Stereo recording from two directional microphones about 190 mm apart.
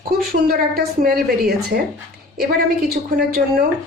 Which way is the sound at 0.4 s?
50° right (ahead or behind).